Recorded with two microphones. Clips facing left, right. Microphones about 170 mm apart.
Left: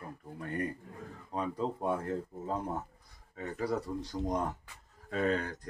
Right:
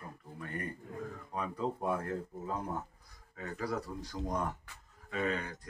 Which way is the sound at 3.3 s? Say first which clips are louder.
Left 3 dB; 25° left (ahead or behind).